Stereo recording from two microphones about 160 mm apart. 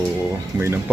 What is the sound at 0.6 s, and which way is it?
Speech, 15° right (ahead or behind).